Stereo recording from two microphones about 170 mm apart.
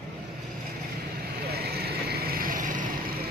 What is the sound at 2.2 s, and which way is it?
Vehicle, 55° right (ahead or behind).